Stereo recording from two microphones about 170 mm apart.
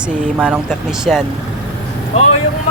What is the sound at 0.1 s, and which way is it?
Speech, 5° right (ahead or behind).